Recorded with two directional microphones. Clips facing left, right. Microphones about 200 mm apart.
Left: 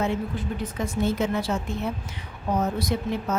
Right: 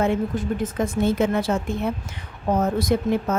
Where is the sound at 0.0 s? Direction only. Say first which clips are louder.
Right 5 dB; 55° right (ahead or behind).